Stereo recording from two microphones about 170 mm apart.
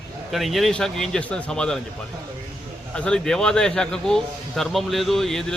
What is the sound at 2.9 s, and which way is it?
A man's voice, 5° left (ahead or behind).